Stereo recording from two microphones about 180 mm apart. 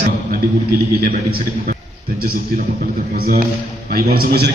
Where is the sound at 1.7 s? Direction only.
55° right (ahead or behind).